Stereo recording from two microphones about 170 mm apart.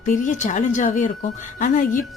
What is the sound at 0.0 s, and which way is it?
A woman's voice, 50° left (ahead or behind).